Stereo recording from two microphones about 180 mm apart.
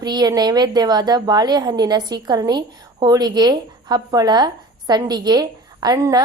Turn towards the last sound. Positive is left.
turn(degrees=-20)  # may be behind; listen again after turning